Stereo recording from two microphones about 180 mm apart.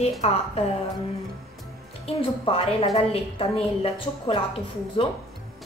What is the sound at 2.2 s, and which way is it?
A woman's voice, 30° left (ahead or behind).